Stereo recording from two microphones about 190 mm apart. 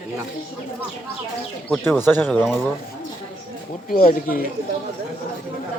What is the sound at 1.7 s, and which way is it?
Speech, 10° left (ahead or behind).